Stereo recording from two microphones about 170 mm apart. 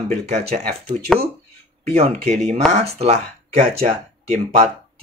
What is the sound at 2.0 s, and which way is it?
Speech, 40° right (ahead or behind).